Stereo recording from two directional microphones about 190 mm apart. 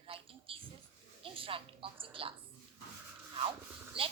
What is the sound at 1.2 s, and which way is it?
A woman's voice, 30° right (ahead or behind).